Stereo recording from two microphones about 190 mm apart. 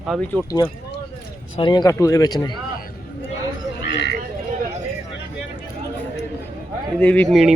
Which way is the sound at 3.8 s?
65° left (ahead or behind).